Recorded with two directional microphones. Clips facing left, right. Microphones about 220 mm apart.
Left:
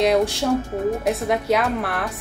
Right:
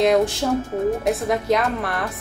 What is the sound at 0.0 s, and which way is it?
A woman's voice, centre (ahead or behind).